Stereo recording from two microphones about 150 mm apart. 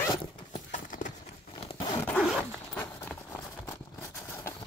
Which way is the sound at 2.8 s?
15° left (ahead or behind).